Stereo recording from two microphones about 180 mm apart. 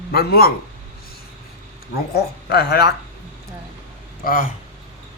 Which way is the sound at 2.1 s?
65° left (ahead or behind).